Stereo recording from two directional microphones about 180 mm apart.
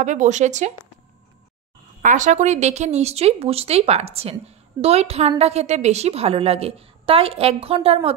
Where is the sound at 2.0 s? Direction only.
40° right (ahead or behind).